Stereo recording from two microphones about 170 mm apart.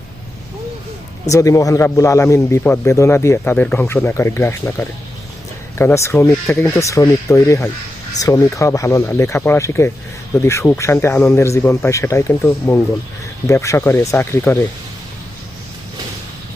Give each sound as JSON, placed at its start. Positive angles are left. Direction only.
{"t": 1.2, "sound": "speech", "side_deg": 20}